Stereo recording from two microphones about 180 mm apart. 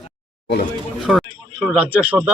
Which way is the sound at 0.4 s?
60° left (ahead or behind).